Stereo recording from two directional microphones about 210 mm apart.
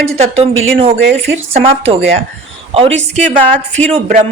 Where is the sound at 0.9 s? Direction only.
60° right (ahead or behind).